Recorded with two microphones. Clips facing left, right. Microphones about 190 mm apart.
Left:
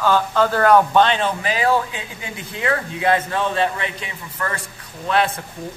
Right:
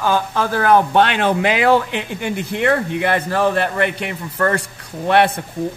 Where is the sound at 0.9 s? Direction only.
65° right (ahead or behind).